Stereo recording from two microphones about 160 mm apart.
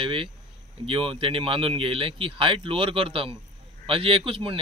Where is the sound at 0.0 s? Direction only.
35° right (ahead or behind).